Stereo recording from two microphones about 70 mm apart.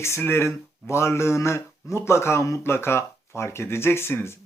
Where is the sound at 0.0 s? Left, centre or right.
Left.